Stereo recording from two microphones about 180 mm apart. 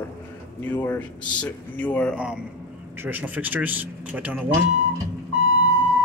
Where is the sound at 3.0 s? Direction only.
10° right (ahead or behind).